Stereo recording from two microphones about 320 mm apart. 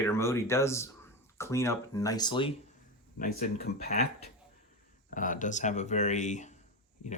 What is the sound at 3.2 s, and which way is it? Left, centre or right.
Speech, left.